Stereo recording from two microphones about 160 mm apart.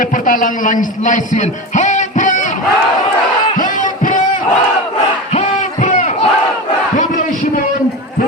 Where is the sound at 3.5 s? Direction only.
55° left (ahead or behind).